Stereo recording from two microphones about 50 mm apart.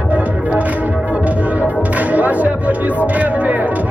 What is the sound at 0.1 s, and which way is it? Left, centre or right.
Music, right.